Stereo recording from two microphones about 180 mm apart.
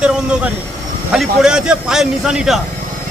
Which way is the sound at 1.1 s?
5° right (ahead or behind).